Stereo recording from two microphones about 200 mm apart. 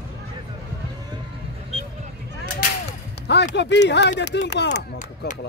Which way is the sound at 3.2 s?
60° left (ahead or behind).